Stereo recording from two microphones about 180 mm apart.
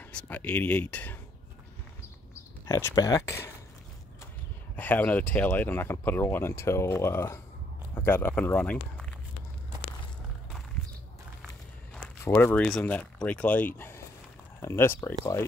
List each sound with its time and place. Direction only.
0.0 s speech: 10° left (ahead or behind)
2.6 s speech: 15° left (ahead or behind)
4.7 s speech: 10° left (ahead or behind)
12.3 s speech: 10° left (ahead or behind)